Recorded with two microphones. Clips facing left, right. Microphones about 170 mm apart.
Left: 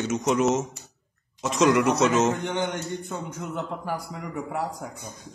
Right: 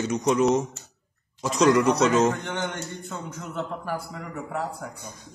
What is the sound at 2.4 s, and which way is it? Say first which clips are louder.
A man's voice: left 3 dB; 15° left (ahead or behind).